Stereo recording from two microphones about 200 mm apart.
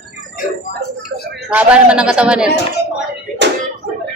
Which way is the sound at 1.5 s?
5° right (ahead or behind).